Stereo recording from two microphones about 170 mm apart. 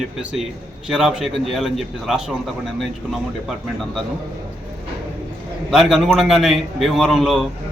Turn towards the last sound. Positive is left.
turn(degrees=0)  # may be behind; listen again after turning